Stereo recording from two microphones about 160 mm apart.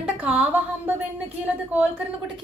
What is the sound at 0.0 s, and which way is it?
A woman's voice, 10° right (ahead or behind).